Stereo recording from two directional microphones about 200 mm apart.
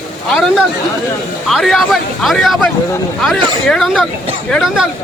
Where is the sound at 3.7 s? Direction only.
Centre (ahead or behind).